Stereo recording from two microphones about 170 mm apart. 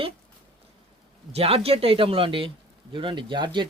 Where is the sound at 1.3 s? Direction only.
35° right (ahead or behind).